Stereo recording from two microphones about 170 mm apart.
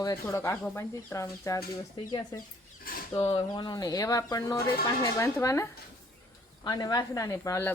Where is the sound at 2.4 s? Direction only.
55° left (ahead or behind).